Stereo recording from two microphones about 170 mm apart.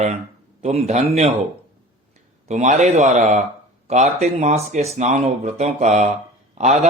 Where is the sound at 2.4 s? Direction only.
45° right (ahead or behind).